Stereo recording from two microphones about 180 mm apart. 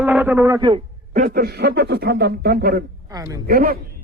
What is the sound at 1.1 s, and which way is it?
Speech, 55° right (ahead or behind).